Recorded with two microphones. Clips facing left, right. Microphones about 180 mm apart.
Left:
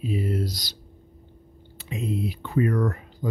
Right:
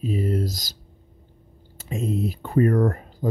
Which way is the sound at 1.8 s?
45° right (ahead or behind).